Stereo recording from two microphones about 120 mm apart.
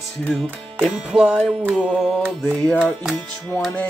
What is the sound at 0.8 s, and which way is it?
Music, 10° right (ahead or behind).